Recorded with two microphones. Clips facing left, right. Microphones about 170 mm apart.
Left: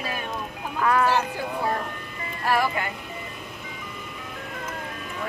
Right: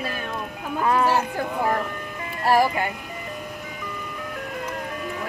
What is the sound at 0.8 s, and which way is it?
Speech, 25° right (ahead or behind).